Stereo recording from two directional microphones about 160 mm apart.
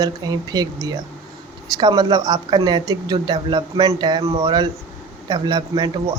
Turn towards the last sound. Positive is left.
turn(degrees=-25)  # may be behind; listen again after turning